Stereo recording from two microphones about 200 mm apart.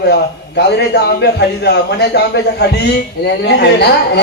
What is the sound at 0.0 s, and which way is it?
A man's voice, 55° left (ahead or behind).